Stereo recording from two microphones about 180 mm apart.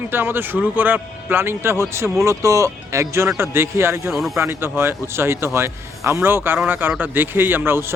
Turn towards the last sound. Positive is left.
turn(degrees=-15)  # may be behind; listen again after turning